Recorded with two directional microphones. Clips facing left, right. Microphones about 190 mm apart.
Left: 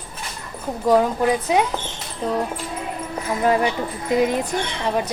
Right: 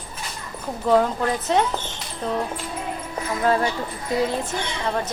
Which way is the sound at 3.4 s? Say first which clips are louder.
Left 2 dB; 15° left (ahead or behind).